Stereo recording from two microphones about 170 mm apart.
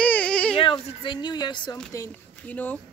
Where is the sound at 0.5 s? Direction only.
30° left (ahead or behind).